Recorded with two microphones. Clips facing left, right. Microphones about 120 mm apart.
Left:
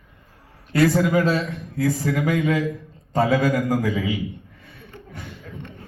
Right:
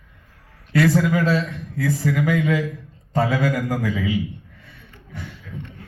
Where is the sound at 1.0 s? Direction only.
20° left (ahead or behind).